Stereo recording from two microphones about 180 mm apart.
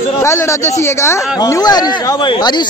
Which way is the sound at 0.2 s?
15° left (ahead or behind).